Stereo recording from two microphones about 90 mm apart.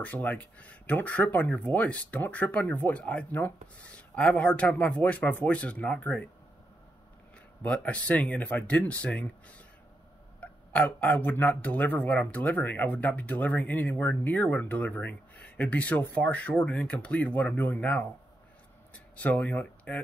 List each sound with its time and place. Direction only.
0.0 s speech: 15° left (ahead or behind)
7.6 s speech: 15° left (ahead or behind)
19.1 s speech: 15° left (ahead or behind)